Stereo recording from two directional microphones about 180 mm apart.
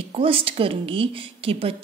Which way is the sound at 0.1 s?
30° right (ahead or behind).